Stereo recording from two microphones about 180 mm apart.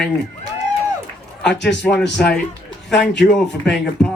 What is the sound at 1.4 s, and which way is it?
A man's voice, 5° left (ahead or behind).